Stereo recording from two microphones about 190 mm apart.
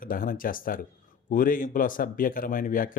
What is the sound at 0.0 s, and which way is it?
Speech, 45° left (ahead or behind).